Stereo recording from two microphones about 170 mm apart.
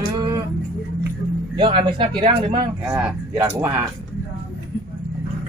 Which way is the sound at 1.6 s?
30° right (ahead or behind).